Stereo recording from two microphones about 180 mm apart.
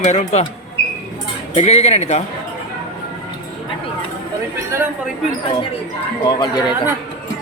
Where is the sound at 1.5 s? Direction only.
35° left (ahead or behind).